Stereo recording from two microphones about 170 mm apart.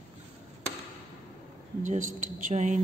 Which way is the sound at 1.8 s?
50° right (ahead or behind).